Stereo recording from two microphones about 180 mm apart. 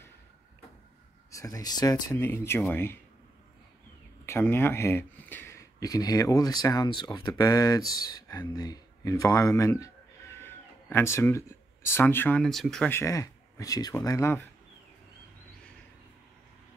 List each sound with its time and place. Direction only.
1.3 s speech: 20° left (ahead or behind)
4.3 s speech: 15° left (ahead or behind)
13.0 s speech: 15° left (ahead or behind)